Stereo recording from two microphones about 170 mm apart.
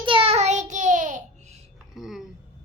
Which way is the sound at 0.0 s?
30° right (ahead or behind).